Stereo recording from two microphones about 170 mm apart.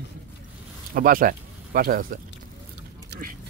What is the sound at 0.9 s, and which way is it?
Speech, 55° right (ahead or behind).